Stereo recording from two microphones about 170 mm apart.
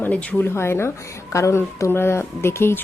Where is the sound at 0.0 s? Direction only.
10° left (ahead or behind).